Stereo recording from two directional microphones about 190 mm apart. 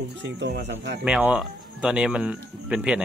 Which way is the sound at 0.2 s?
65° right (ahead or behind).